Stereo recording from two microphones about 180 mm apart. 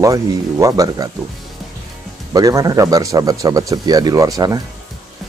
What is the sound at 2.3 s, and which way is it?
Speech, 20° right (ahead or behind).